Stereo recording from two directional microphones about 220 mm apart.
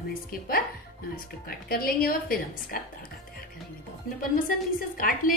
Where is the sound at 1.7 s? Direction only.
40° left (ahead or behind).